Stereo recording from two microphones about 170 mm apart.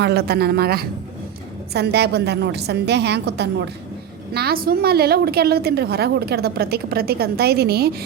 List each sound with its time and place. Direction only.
0.0 s a woman's voice: 75° right (ahead or behind)
1.7 s a woman's voice: 75° right (ahead or behind)
4.4 s a woman's voice: 65° right (ahead or behind)